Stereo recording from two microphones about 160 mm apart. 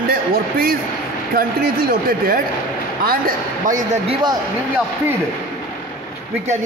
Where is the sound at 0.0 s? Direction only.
65° right (ahead or behind).